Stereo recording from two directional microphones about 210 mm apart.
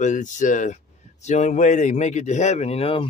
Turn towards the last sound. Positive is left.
turn(degrees=25)  # may be behind; listen again after turning